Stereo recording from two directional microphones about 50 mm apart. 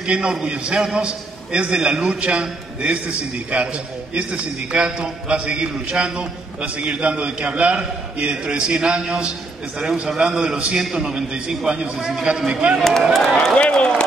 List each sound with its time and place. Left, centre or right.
0.0 s a man's voice: centre
13.2 s speech: centre